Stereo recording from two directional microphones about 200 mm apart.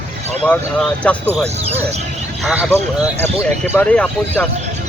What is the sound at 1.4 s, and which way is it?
Speech, 30° right (ahead or behind).